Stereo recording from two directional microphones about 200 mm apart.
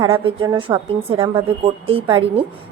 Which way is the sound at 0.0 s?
25° right (ahead or behind).